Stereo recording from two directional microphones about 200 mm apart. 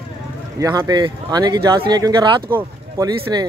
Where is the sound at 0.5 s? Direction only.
15° right (ahead or behind).